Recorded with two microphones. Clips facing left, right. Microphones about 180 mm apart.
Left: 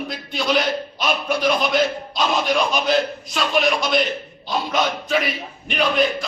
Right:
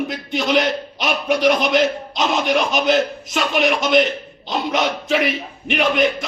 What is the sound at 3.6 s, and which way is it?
Speech, 85° right.